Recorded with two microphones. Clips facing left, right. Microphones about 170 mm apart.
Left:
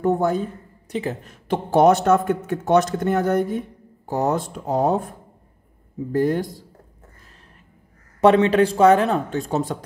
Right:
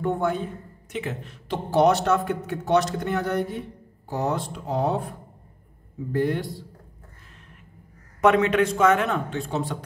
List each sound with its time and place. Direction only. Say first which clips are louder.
0.0 s a man's voice: left 5 dB; 40° left (ahead or behind)
6.1 s a man's voice: left 4 dB; 40° left (ahead or behind)
8.2 s a man's voice: left 4 dB; 30° left (ahead or behind)